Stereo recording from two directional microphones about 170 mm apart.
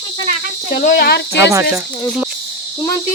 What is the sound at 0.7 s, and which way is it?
Speech, 50° left (ahead or behind).